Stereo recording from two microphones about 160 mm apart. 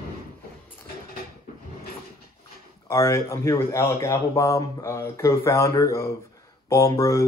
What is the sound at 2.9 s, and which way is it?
Speech, 20° left (ahead or behind).